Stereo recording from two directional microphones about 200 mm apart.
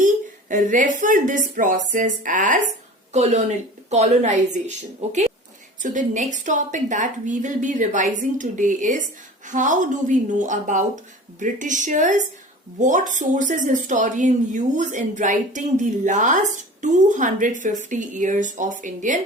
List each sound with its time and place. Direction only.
0.0 s speech: 40° right (ahead or behind)
5.8 s speech: 40° right (ahead or behind)